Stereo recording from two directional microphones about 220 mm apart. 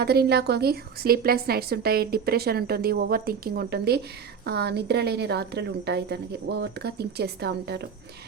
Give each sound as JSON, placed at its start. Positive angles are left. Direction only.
{"t": 0.0, "sound": "a woman's voice", "side_deg": -45}